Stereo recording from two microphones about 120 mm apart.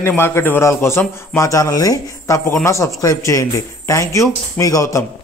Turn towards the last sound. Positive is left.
turn(degrees=25)  # may be behind; listen again after turning